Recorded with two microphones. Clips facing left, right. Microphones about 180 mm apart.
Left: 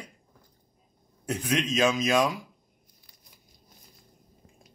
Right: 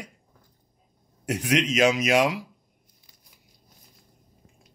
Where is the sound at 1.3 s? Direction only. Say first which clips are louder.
Right 3 dB; 85° right.